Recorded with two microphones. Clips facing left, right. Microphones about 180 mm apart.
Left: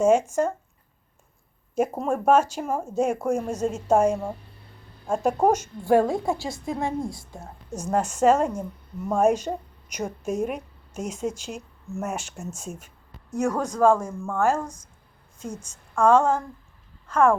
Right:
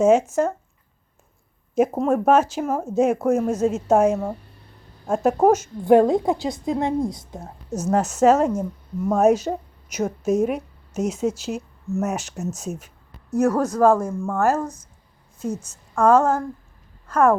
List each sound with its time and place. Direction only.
0.0 s a woman's voice: 5° right (ahead or behind)
1.7 s a woman's voice: 10° right (ahead or behind)
5.8 s a woman's voice: 20° right (ahead or behind)
7.9 s a woman's voice: 5° right (ahead or behind)